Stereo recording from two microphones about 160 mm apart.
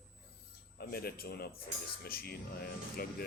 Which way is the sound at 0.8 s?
70° left (ahead or behind).